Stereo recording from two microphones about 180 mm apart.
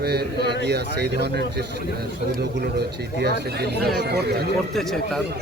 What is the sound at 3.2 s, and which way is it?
Speech, 65° right (ahead or behind).